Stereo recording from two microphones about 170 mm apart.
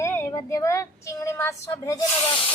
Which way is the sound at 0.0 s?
15° left (ahead or behind).